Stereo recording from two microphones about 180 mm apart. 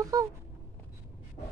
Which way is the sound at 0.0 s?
20° right (ahead or behind).